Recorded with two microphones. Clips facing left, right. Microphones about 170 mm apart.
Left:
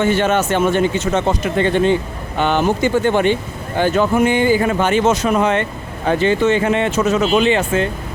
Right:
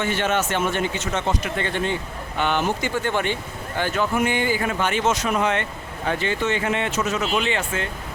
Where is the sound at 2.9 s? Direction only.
20° left (ahead or behind).